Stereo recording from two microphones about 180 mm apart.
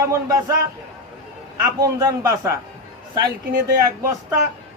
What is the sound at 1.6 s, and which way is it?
Speech, 20° right (ahead or behind).